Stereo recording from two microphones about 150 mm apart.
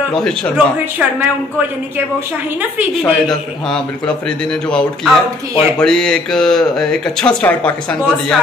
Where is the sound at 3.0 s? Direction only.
5° left (ahead or behind).